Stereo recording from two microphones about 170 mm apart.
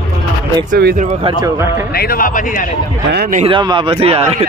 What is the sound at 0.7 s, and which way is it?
Speech, 65° right (ahead or behind).